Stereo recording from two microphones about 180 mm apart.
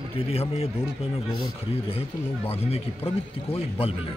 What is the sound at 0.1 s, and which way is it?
Speech, 35° left (ahead or behind).